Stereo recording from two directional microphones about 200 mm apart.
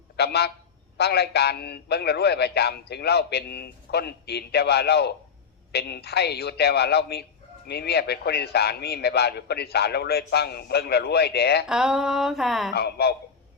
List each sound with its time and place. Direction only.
0.2 s a man's voice: 55° left (ahead or behind)
11.7 s a sound: 5° right (ahead or behind)
12.7 s a man's voice: 55° left (ahead or behind)